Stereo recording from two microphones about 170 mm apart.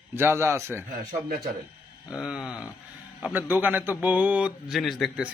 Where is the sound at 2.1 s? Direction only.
5° right (ahead or behind).